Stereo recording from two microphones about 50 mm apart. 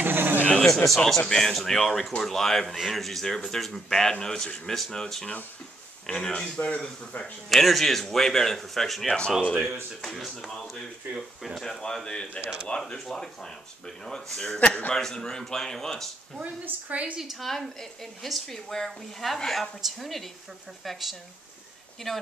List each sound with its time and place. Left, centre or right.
0.0 s a sound: right
0.5 s a sound: centre
0.8 s a woman's voice: centre; by 7.3 s left
7.4 s a woman's voice: centre
9.0 s speech: centre
9.5 s a woman's voice: centre
11.8 s speech: centre
16.9 s a woman's voice: right
17.2 s a woman's voice: centre